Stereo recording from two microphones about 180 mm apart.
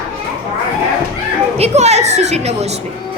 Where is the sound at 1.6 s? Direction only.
40° right (ahead or behind).